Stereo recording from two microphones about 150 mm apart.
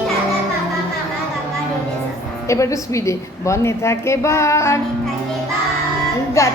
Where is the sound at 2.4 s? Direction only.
20° left (ahead or behind).